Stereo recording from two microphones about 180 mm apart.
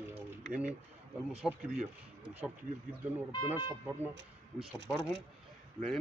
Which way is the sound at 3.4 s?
10° right (ahead or behind).